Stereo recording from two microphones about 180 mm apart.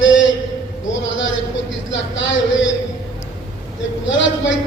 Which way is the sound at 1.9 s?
90° left.